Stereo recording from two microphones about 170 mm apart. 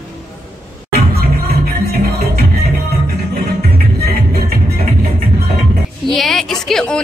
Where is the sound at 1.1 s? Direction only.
65° right (ahead or behind).